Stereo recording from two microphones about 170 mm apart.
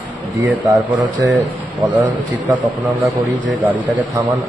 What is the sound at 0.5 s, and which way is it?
Speech, 10° right (ahead or behind).